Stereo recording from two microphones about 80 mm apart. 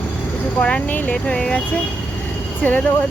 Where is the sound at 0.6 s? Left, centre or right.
Centre.